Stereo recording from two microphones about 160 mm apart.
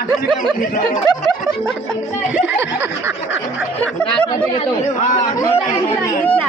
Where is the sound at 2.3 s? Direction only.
15° right (ahead or behind).